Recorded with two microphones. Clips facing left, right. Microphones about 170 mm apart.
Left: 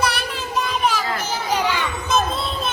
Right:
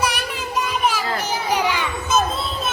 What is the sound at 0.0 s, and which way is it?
Child singing, 10° right (ahead or behind).